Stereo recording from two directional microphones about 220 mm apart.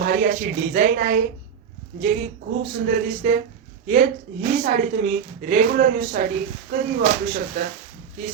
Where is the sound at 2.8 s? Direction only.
35° right (ahead or behind).